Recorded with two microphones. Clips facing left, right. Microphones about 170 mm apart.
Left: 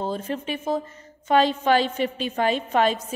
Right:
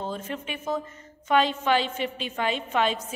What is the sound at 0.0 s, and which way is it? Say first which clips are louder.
A woman's voice: left 5 dB; 35° left (ahead or behind).